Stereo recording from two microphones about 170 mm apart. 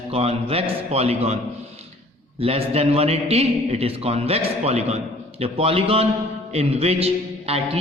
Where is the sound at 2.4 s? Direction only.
35° right (ahead or behind).